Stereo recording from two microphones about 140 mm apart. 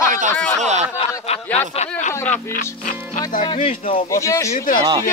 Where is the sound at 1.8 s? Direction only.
55° left (ahead or behind).